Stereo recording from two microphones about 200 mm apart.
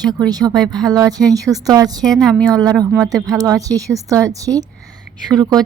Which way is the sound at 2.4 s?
20° right (ahead or behind).